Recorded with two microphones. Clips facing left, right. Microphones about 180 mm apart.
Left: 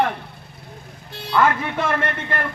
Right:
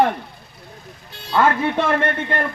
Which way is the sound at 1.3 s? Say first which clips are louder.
Right 2 dB; 30° right (ahead or behind).